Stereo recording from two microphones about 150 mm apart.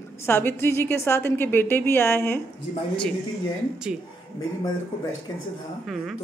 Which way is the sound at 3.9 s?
5° right (ahead or behind).